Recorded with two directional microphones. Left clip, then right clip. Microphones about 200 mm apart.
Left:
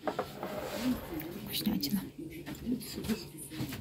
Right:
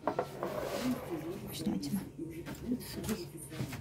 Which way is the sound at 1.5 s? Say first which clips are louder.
Left 6 dB; 5° right (ahead or behind).